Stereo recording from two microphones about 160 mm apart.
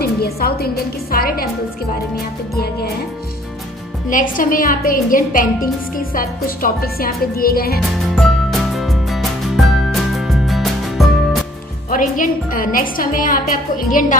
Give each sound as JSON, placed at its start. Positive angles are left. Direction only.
{"t": 0.0, "sound": "a woman's voice", "side_deg": 75}
{"t": 2.5, "sound": "speech", "side_deg": 75}
{"t": 4.1, "sound": "a woman's voice", "side_deg": 60}
{"t": 8.1, "sound": "music", "side_deg": 0}
{"t": 11.9, "sound": "a woman's voice", "side_deg": 60}